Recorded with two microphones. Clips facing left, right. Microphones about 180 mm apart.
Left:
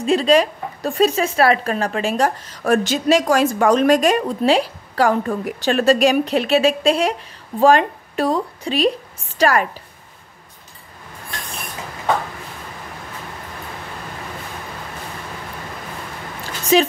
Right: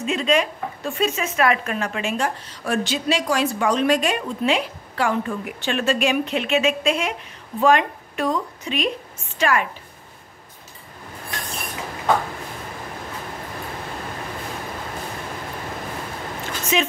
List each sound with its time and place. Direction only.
0.0 s speech: 35° left (ahead or behind)
16.7 s speech: 35° left (ahead or behind)